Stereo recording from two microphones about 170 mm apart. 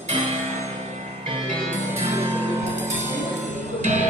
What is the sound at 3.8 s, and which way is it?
Music, 45° right (ahead or behind).